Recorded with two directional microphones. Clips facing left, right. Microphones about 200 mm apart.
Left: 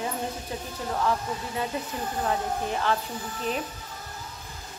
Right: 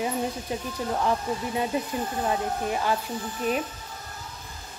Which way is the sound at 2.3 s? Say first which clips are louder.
Even; 10° right (ahead or behind).